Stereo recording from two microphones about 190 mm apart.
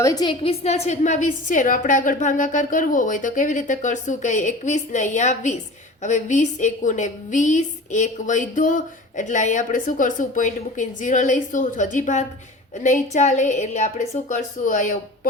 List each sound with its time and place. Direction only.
0.0 s a woman's voice: 20° left (ahead or behind); by 15.3 s 45° left (ahead or behind)